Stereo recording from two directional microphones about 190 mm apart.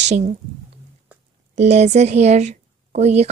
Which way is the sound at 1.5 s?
35° right (ahead or behind).